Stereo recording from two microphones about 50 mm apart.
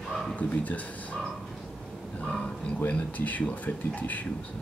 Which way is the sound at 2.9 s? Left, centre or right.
Left.